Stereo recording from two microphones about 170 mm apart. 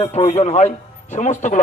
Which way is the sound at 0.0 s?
40° left (ahead or behind).